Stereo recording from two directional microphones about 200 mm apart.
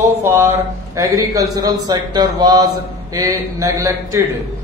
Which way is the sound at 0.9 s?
15° right (ahead or behind).